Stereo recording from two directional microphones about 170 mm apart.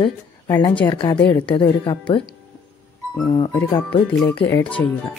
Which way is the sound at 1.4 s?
30° left (ahead or behind).